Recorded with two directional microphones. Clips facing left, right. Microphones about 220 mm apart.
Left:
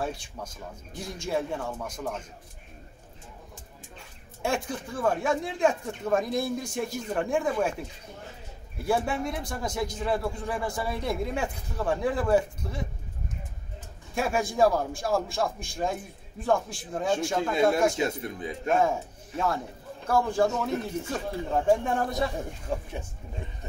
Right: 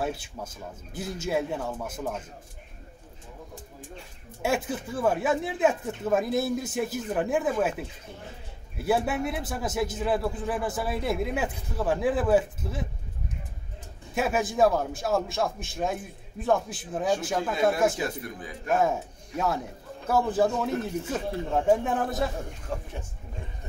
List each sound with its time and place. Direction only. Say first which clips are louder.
0.0 s a man's voice: right 2 dB; 5° right (ahead or behind)
4.4 s a man's voice: right 2 dB; 5° right (ahead or behind)
8.8 s a man's voice: right 1 dB; 5° right (ahead or behind)
14.1 s a man's voice: right 1 dB; centre (ahead or behind)
17.9 s a man's voice: left 3 dB; 25° left (ahead or behind)
18.8 s a man's voice: even; centre (ahead or behind)